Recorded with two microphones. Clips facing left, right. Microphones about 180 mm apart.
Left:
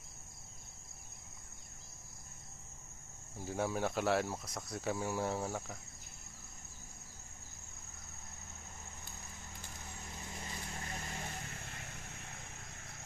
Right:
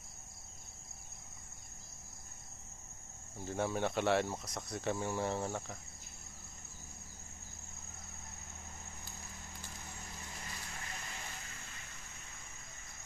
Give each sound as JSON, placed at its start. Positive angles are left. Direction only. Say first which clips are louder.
{"t": 3.4, "sound": "speech", "louder": "even", "side_deg": 5}
{"t": 10.8, "sound": "vehicle", "louder": "left 4 dB", "side_deg": 40}
{"t": 11.5, "sound": "vehicle", "louder": "left 5 dB", "side_deg": 60}